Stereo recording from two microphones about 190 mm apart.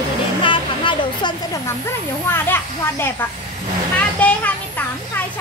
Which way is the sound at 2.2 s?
10° left (ahead or behind).